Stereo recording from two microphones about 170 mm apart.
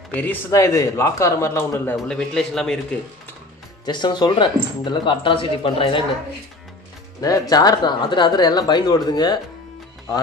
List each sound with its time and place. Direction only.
0.1 s speech: 10° left (ahead or behind)
2.0 s a man's voice: 5° left (ahead or behind)
3.8 s speech: 25° left (ahead or behind)
7.2 s speech: 20° left (ahead or behind)